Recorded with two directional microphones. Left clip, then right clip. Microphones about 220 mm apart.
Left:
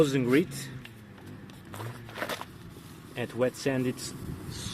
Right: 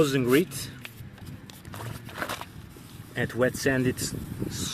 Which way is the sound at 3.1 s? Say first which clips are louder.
Right 3 dB; 45° right (ahead or behind).